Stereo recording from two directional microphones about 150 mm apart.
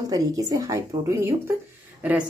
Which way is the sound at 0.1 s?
25° right (ahead or behind).